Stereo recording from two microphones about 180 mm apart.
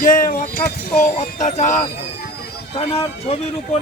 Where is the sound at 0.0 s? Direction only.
50° left (ahead or behind).